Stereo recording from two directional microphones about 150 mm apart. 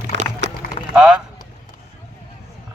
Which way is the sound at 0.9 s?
5° right (ahead or behind).